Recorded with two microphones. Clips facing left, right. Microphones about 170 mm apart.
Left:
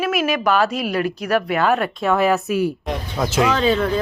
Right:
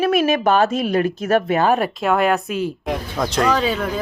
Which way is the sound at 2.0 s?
Centre (ahead or behind).